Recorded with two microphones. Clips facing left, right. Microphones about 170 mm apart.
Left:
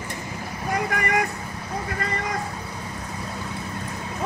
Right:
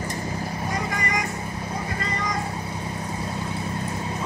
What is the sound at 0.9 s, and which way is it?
Vehicle, 55° left (ahead or behind).